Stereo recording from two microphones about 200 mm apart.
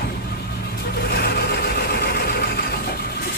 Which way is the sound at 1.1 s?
50° left (ahead or behind).